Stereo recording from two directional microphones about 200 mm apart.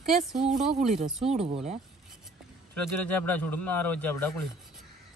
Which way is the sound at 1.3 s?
30° right (ahead or behind).